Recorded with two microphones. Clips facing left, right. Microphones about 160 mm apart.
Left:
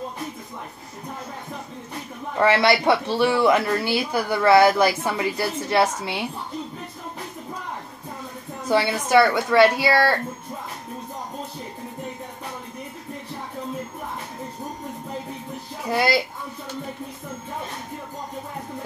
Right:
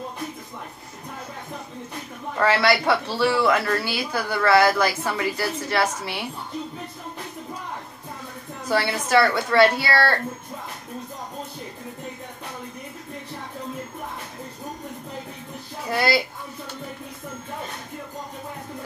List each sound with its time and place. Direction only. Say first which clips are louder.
2.3 s speech: left 2 dB; 20° left (ahead or behind)
8.6 s a woman's voice: left 2 dB; 20° left (ahead or behind)